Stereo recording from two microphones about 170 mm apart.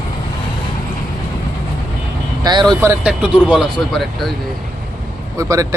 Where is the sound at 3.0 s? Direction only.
5° right (ahead or behind).